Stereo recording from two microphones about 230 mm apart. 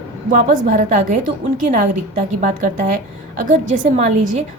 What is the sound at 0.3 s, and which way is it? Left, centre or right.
Speech, right.